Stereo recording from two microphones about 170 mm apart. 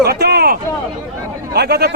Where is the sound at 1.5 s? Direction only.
70° right (ahead or behind).